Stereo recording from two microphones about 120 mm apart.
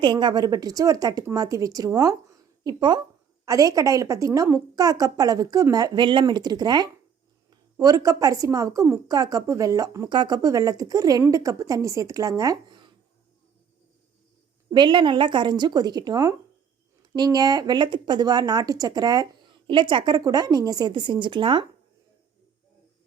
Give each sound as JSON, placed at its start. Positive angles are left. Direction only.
{"t": 0.0, "sound": "a woman's voice", "side_deg": -40}
{"t": 14.7, "sound": "speech", "side_deg": -40}